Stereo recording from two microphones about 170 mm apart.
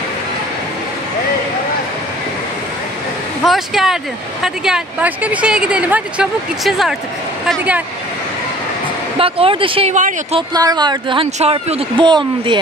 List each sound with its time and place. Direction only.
3.4 s speech: centre (ahead or behind)
9.2 s speech: 35° right (ahead or behind)
11.3 s speech: 35° right (ahead or behind)